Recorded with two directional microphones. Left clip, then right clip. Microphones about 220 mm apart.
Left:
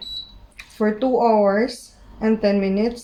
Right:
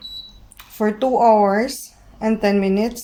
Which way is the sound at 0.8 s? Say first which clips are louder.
Right 2 dB; 40° right (ahead or behind).